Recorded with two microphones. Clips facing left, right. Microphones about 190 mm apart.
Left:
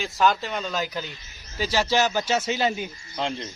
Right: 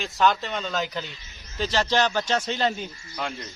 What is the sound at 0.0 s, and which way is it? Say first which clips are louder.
A man's voice: even; centre (ahead or behind).